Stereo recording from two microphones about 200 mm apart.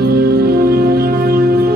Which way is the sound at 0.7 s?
50° right (ahead or behind).